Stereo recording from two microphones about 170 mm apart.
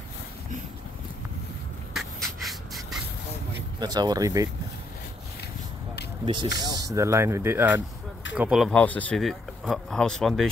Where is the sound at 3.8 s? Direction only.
25° right (ahead or behind).